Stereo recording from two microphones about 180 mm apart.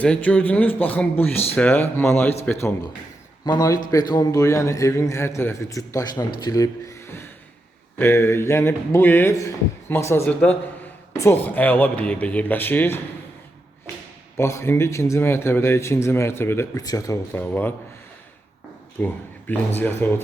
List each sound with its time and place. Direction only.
0.0 s a man's voice: 5° left (ahead or behind)
14.3 s a man's voice: 15° left (ahead or behind)
18.9 s a man's voice: 10° left (ahead or behind)